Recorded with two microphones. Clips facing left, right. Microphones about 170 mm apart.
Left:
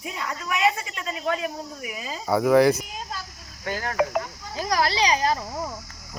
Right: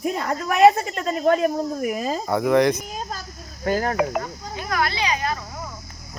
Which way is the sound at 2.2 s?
Centre (ahead or behind).